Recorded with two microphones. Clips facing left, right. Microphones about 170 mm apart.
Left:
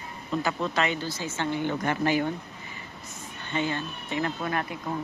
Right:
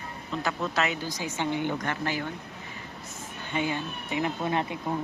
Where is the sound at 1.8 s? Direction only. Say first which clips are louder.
Left 5 dB; 15° left (ahead or behind).